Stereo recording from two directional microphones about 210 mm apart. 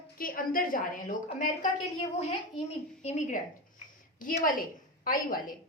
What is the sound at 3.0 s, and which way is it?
A woman's voice, 35° left (ahead or behind).